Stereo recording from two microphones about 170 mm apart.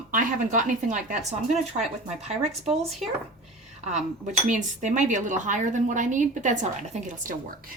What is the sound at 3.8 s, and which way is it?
Speech, 45° right (ahead or behind).